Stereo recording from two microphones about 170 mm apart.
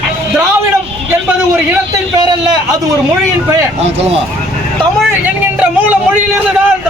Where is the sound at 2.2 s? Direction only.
25° right (ahead or behind).